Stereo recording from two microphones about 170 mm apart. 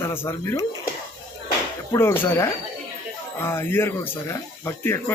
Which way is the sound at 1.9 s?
15° left (ahead or behind).